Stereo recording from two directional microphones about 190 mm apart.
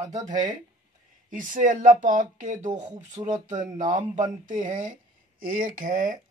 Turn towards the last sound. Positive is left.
turn(degrees=-45)  # may be behind; listen again after turning